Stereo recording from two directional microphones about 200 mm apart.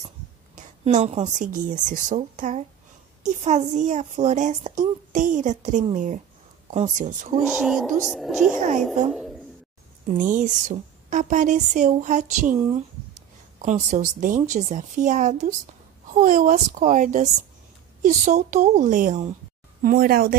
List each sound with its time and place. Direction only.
0.6 s speech: 35° right (ahead or behind)
7.3 s speech: centre (ahead or behind)
8.5 s speech: 35° right (ahead or behind)
10.0 s speech: 40° right (ahead or behind)